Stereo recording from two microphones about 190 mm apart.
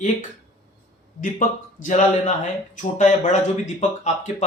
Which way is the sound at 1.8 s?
40° left (ahead or behind).